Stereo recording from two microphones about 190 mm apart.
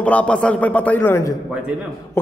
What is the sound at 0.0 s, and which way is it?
A man's voice, 5° left (ahead or behind).